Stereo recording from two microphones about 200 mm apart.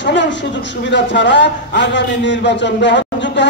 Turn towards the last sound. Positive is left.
turn(degrees=60)  # may be behind; listen again after turning